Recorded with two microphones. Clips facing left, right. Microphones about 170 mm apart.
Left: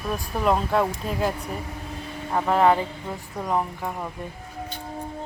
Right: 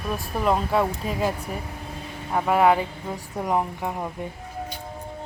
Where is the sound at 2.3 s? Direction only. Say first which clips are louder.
Even; 10° right (ahead or behind).